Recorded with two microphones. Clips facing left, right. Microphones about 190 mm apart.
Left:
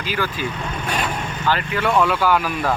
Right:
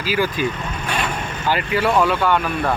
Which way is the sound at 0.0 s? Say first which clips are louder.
Right 4 dB; 10° right (ahead or behind).